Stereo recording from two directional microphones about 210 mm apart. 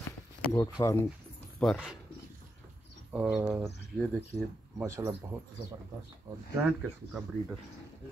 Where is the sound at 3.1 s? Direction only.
5° right (ahead or behind).